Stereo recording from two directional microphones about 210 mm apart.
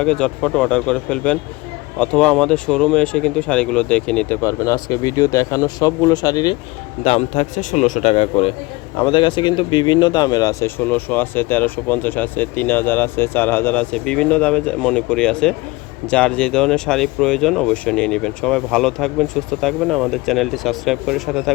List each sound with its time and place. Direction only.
0.0 s speech: 5° left (ahead or behind); by 6.6 s 20° left (ahead or behind)
7.0 s a man's voice: 30° left (ahead or behind); by 21.5 s centre (ahead or behind)